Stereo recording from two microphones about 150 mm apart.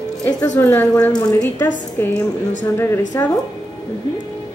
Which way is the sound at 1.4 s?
15° left (ahead or behind).